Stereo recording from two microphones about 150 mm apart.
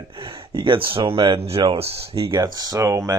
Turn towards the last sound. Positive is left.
turn(degrees=-20)  # may be behind; listen again after turning